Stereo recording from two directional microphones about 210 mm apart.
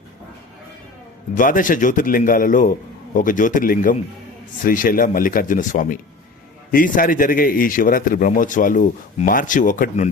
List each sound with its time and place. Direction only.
1.4 s a man's voice: 40° left (ahead or behind)